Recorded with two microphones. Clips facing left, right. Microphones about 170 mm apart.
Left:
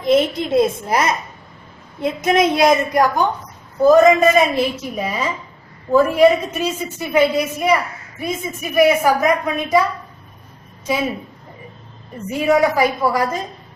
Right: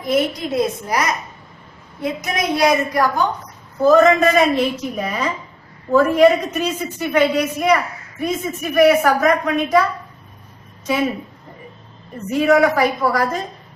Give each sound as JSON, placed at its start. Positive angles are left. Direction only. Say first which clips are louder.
{"t": 0.0, "sound": "a woman's voice", "louder": "left 3 dB", "side_deg": 25}
{"t": 12.3, "sound": "a woman's voice", "louder": "right 1 dB", "side_deg": 10}